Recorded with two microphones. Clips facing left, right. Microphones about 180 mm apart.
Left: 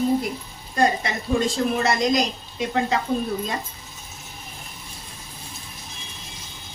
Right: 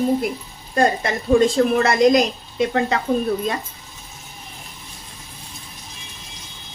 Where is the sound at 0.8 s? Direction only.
50° right (ahead or behind).